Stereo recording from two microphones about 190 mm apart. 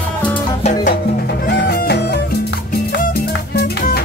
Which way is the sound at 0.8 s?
60° left (ahead or behind).